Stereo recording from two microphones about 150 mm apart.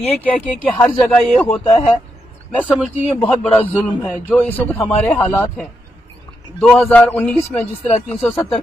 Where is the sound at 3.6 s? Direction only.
10° left (ahead or behind).